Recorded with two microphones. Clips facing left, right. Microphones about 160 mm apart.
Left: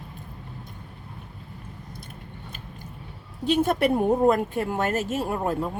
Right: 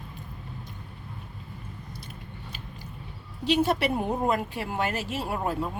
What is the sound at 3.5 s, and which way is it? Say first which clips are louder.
Speech: left 3 dB; 50° left (ahead or behind).